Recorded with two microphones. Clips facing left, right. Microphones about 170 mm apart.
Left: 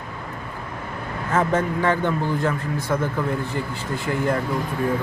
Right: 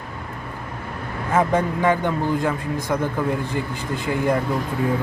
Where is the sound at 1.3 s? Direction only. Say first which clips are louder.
Right 2 dB; 15° right (ahead or behind).